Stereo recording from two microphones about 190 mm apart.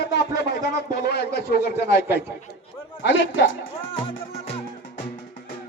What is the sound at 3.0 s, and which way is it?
Speech, 75° left (ahead or behind).